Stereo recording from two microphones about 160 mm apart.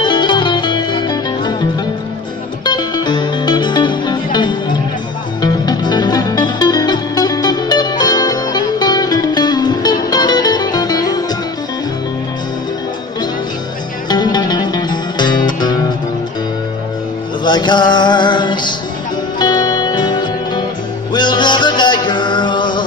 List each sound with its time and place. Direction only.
0.0 s music: 30° left (ahead or behind)
14.0 s music: 25° left (ahead or behind)
17.5 s music: 25° left (ahead or behind)